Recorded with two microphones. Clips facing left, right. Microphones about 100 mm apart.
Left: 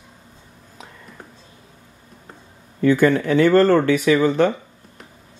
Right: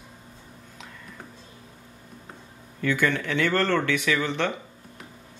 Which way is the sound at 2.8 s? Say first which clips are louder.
Left 9 dB; 40° left (ahead or behind).